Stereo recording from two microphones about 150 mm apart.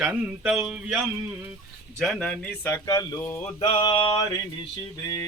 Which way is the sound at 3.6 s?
35° left (ahead or behind).